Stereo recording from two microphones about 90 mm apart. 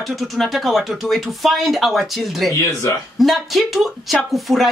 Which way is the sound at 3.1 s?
Centre (ahead or behind).